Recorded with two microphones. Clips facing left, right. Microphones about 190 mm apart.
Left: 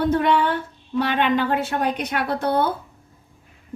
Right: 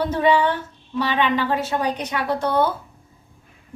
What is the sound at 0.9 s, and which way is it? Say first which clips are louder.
A woman's voice: left 1 dB; 55° left (ahead or behind).